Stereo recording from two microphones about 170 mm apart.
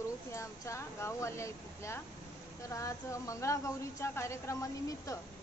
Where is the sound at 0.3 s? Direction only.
15° left (ahead or behind).